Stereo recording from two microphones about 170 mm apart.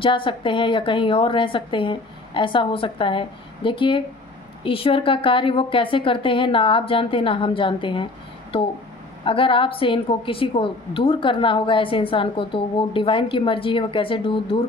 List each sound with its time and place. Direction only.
0.0 s a woman's voice: 30° left (ahead or behind)